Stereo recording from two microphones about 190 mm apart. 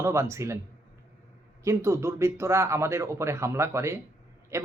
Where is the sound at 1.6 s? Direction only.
15° right (ahead or behind).